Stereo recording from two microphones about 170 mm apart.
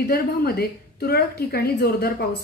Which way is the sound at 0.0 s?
65° left (ahead or behind).